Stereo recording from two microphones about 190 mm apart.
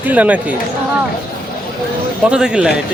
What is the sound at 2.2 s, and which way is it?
Speech, 5° right (ahead or behind).